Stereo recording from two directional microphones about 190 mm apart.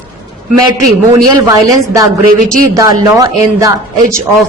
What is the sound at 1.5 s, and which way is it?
Speech, 15° right (ahead or behind).